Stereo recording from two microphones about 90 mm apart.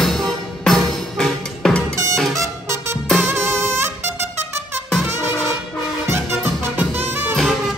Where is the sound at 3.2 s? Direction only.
30° right (ahead or behind).